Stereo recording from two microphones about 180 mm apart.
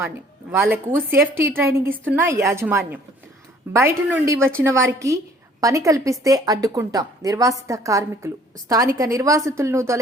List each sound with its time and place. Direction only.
0.0 s a woman's voice: 10° right (ahead or behind)